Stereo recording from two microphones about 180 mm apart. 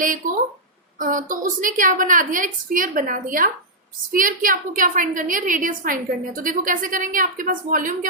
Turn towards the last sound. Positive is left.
turn(degrees=-50)  # may be behind; listen again after turning